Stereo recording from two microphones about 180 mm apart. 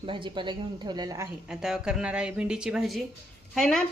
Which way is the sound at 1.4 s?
5° right (ahead or behind).